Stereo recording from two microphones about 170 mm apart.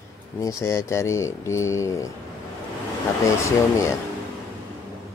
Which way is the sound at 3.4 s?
15° left (ahead or behind).